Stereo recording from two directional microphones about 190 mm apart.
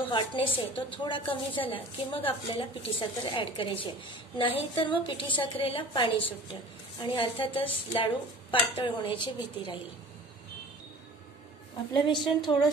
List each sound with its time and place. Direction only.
0.1 s a woman's voice: 25° left (ahead or behind)
11.9 s a woman's voice: 25° left (ahead or behind)